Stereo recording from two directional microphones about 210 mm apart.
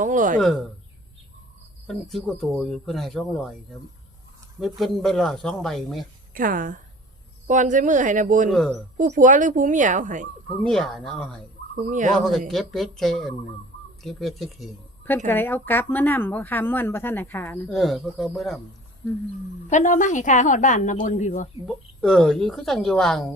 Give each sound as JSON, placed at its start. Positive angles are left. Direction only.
{"t": 0.0, "sound": "speech", "side_deg": -40}
{"t": 0.3, "sound": "speech", "side_deg": 5}
{"t": 1.9, "sound": "speech", "side_deg": 0}
{"t": 4.8, "sound": "speech", "side_deg": 0}
{"t": 6.3, "sound": "speech", "side_deg": -40}
{"t": 8.4, "sound": "speech", "side_deg": 0}
{"t": 9.0, "sound": "speech", "side_deg": -40}
{"t": 10.6, "sound": "speech", "side_deg": 0}
{"t": 11.9, "sound": "speech", "side_deg": -35}
{"t": 12.1, "sound": "speech", "side_deg": 0}
{"t": 15.3, "sound": "speech", "side_deg": 10}
{"t": 19.7, "sound": "a woman's voice", "side_deg": 35}
{"t": 21.7, "sound": "speech", "side_deg": 5}